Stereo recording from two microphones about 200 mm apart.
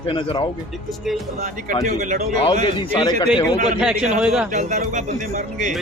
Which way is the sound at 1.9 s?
40° right (ahead or behind).